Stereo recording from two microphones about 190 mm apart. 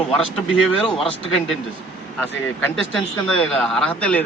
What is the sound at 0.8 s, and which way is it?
Speech, centre (ahead or behind).